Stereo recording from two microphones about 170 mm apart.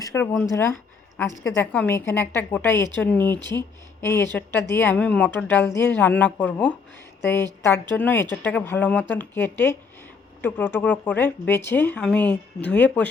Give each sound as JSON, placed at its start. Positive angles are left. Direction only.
{"t": 0.0, "sound": "speech", "side_deg": 15}
{"t": 1.5, "sound": "speech", "side_deg": 10}